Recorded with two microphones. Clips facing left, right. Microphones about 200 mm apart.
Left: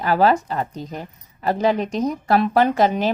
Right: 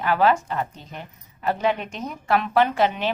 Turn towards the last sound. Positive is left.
turn(degrees=40)  # may be behind; listen again after turning